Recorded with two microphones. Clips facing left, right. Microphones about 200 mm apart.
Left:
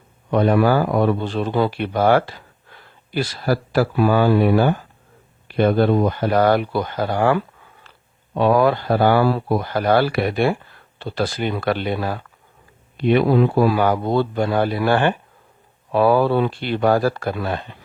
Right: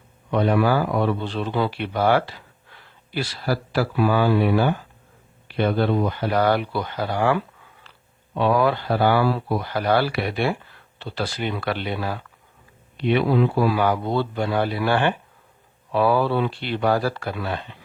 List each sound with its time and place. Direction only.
0.3 s speech: 45° left (ahead or behind)